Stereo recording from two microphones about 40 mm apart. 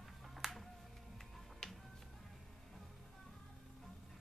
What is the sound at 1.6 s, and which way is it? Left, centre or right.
Music, centre.